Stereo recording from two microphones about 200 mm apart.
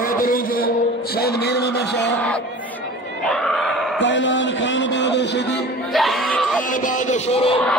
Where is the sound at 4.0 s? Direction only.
65° left (ahead or behind).